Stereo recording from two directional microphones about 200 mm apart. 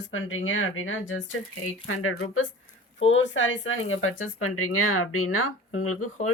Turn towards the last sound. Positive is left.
turn(degrees=90)